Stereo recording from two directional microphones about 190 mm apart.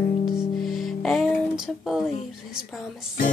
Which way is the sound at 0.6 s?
Centre (ahead or behind).